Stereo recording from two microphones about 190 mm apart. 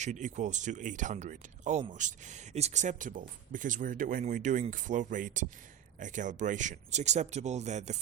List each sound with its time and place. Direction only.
0.0 s speech: 40° right (ahead or behind)